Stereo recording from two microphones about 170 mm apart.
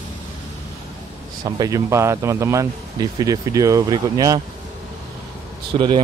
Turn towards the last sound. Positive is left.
turn(degrees=-25)  # may be behind; listen again after turning